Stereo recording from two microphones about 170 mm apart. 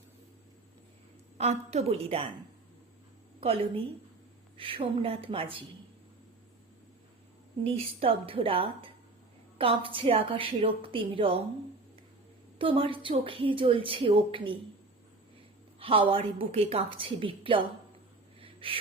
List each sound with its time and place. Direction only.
1.4 s a woman's voice: 40° right (ahead or behind)
3.4 s a woman's voice: 35° right (ahead or behind)
7.6 s a woman's voice: 35° right (ahead or behind)
12.5 s a woman's voice: 30° right (ahead or behind)
15.8 s a woman's voice: 35° right (ahead or behind)
18.3 s a sound: 30° right (ahead or behind)